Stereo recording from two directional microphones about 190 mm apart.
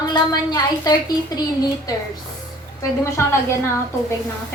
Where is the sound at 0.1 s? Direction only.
20° left (ahead or behind).